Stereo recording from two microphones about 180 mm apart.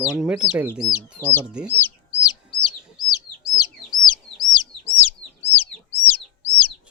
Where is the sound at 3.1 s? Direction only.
20° left (ahead or behind).